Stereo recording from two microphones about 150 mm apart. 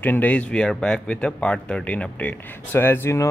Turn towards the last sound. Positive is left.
turn(degrees=15)  # may be behind; listen again after turning